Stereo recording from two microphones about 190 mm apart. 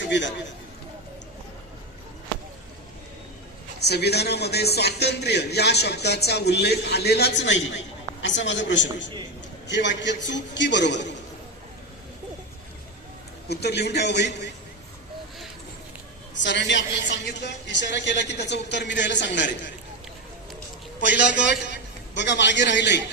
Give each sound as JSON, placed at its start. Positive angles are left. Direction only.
{"t": 0.0, "sound": "a man's voice", "side_deg": 70}
{"t": 3.8, "sound": "a man's voice", "side_deg": 60}
{"t": 13.5, "sound": "a man's voice", "side_deg": 60}
{"t": 16.4, "sound": "a woman's voice", "side_deg": 70}
{"t": 21.2, "sound": "a man's voice", "side_deg": 65}